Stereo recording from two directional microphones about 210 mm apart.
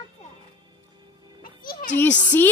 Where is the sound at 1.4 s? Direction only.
40° left (ahead or behind).